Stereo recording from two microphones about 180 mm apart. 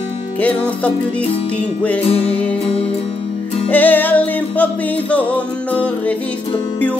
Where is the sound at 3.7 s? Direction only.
10° left (ahead or behind).